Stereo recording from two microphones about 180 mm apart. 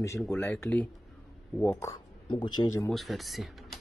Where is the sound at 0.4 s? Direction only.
10° left (ahead or behind).